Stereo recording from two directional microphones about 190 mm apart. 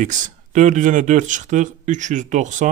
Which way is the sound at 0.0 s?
40° right (ahead or behind).